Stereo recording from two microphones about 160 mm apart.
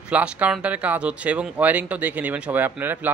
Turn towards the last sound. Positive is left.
turn(degrees=-10)  # may be behind; listen again after turning